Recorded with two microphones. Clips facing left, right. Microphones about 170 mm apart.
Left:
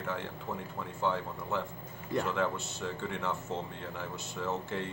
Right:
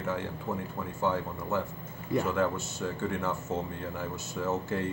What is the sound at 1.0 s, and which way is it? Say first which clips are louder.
A man's voice: right 3 dB; 5° right (ahead or behind).